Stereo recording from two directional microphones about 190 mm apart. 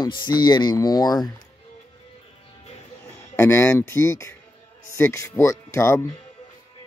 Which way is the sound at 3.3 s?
15° left (ahead or behind).